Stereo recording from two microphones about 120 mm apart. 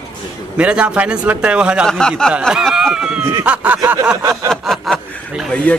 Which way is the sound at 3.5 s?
15° right (ahead or behind).